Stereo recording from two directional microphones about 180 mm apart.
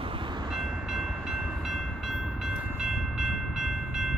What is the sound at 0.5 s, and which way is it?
Train, 5° right (ahead or behind).